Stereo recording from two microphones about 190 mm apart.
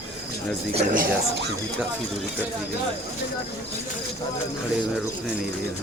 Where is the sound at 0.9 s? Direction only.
45° right (ahead or behind).